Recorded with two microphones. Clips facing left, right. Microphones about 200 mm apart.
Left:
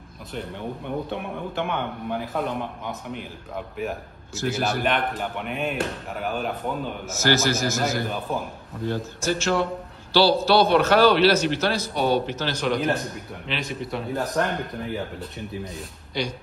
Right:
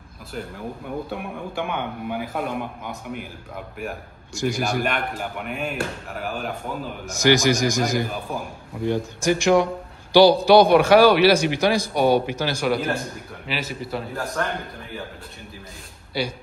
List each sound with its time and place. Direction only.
0.3 s a man's voice: 5° right (ahead or behind)
4.4 s a man's voice: 10° right (ahead or behind)
7.2 s a man's voice: 15° right (ahead or behind)
16.1 s a man's voice: 5° right (ahead or behind)